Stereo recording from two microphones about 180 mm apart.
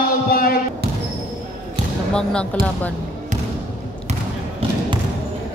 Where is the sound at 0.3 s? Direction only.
55° left (ahead or behind).